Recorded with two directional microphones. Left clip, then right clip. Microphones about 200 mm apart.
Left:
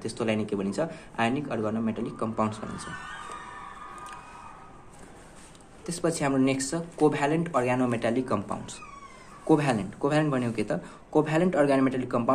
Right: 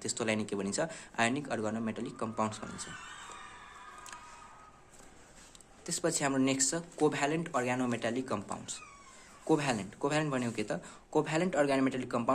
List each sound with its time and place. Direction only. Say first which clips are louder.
0.0 s speech: left 5 dB; 30° right (ahead or behind)
5.9 s speech: left 5 dB; 25° right (ahead or behind)